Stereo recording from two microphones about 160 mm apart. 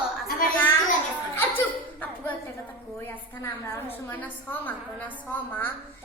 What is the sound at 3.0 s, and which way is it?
A woman's voice, 15° left (ahead or behind).